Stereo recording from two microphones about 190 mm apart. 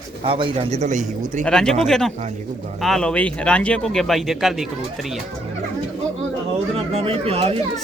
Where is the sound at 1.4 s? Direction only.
5° left (ahead or behind).